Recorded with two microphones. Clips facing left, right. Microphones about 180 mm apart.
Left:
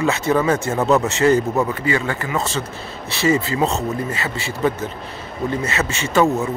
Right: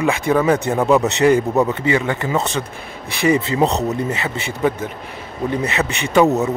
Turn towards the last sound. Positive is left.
turn(degrees=-20)  # may be behind; listen again after turning